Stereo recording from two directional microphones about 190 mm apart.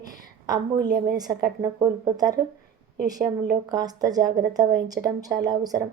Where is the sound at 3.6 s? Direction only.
20° right (ahead or behind).